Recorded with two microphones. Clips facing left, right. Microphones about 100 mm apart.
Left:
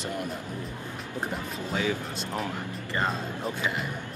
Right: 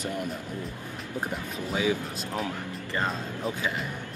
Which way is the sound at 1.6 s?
15° right (ahead or behind).